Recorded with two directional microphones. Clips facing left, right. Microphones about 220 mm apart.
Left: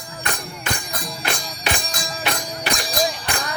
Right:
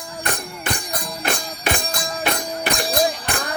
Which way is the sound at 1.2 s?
55° right (ahead or behind).